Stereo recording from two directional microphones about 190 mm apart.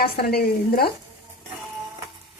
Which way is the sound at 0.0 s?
55° left (ahead or behind).